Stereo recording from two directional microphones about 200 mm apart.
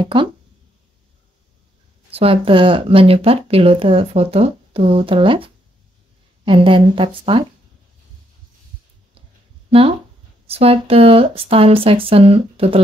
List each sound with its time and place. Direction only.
0.0 s speech: 25° right (ahead or behind)
2.0 s speech: 30° right (ahead or behind)
9.7 s speech: 30° right (ahead or behind)